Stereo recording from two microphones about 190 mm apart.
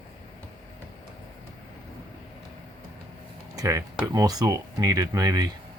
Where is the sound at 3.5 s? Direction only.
15° right (ahead or behind).